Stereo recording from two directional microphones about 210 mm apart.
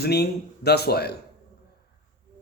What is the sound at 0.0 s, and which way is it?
Speech, 50° left (ahead or behind).